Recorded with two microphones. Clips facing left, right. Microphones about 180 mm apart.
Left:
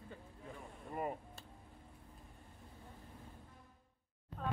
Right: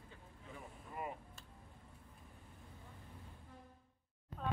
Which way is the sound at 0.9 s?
45° left (ahead or behind).